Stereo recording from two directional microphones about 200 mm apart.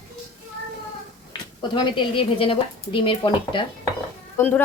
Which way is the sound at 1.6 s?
25° left (ahead or behind).